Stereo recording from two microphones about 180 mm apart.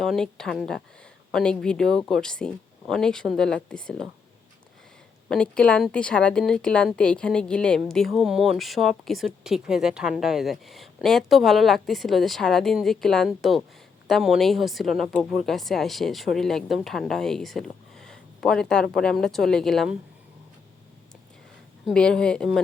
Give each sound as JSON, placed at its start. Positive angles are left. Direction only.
{"t": 0.0, "sound": "speech", "side_deg": 0}
{"t": 5.3, "sound": "speech", "side_deg": 5}
{"t": 21.8, "sound": "speech", "side_deg": 5}